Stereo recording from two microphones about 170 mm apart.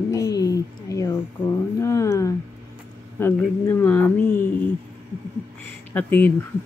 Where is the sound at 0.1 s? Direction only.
20° left (ahead or behind).